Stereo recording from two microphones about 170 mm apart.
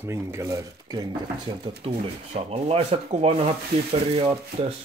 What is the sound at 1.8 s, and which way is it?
Speech, 35° right (ahead or behind).